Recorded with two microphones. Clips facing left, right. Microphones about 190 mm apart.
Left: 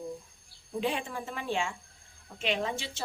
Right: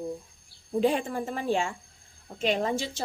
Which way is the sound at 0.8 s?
45° right (ahead or behind).